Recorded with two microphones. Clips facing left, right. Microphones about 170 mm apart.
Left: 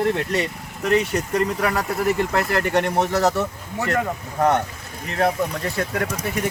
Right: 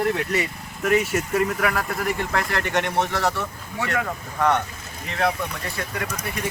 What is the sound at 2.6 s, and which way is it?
Speech, 35° left (ahead or behind).